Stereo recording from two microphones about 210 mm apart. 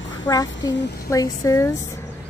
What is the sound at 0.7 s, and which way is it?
Speech, 55° left (ahead or behind).